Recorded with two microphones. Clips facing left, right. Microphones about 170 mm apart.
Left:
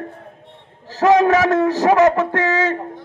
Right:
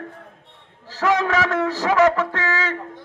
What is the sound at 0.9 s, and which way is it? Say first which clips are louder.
A man's voice: left 7 dB; 40° left (ahead or behind).